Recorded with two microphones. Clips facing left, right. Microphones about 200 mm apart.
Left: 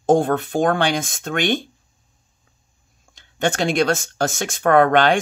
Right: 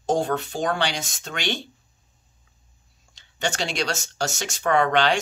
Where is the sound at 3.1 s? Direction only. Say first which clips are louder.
Left 7 dB; 55° left (ahead or behind).